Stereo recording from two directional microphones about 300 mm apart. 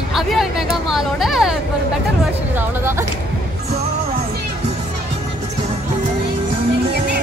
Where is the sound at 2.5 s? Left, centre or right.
Centre.